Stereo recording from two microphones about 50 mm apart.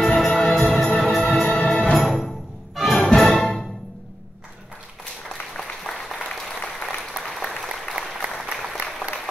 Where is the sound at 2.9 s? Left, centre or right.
Centre.